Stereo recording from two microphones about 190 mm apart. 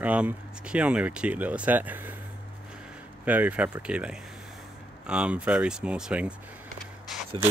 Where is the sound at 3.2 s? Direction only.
10° right (ahead or behind).